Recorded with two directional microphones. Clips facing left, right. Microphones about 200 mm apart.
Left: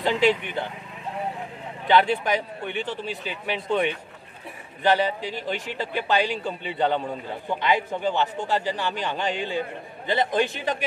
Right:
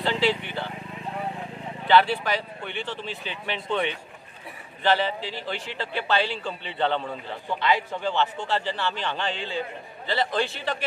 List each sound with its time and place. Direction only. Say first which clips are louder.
0.0 s speech: left 3 dB; 15° left (ahead or behind)
1.9 s a man's voice: left 1 dB; 15° left (ahead or behind)